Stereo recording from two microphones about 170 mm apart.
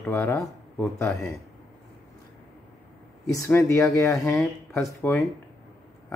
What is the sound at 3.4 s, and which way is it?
Speech, 15° left (ahead or behind).